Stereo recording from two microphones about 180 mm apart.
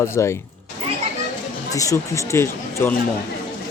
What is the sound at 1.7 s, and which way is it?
Speech, 20° left (ahead or behind).